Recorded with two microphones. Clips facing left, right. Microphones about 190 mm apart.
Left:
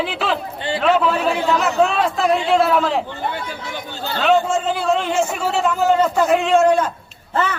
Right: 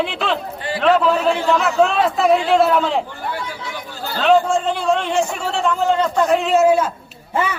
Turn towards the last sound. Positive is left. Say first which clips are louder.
# even
turn(degrees=-10)  # may be behind; listen again after turning